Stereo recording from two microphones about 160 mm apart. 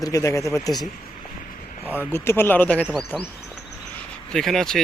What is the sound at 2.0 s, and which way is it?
Speech, 15° left (ahead or behind).